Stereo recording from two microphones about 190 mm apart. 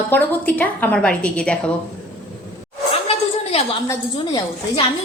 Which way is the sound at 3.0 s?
35° left (ahead or behind).